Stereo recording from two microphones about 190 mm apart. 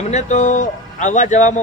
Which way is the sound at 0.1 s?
35° left (ahead or behind).